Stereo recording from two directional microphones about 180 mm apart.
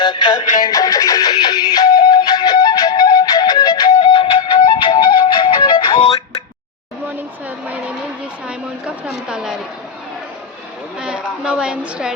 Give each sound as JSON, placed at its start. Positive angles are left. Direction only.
{"t": 0.0, "sound": "music", "side_deg": 30}
{"t": 8.4, "sound": "a sound", "side_deg": -5}
{"t": 11.0, "sound": "a woman's voice", "side_deg": -5}